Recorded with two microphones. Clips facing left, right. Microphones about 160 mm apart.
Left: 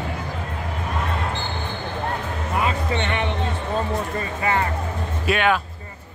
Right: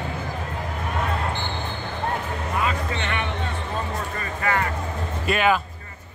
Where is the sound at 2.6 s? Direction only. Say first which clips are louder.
Left 3 dB; 30° left (ahead or behind).